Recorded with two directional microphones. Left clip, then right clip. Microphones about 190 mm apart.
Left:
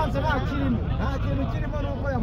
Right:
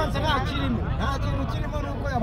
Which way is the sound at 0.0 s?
25° right (ahead or behind).